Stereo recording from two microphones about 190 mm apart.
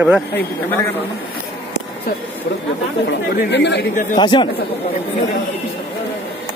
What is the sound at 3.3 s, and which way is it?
Speech, 65° left (ahead or behind).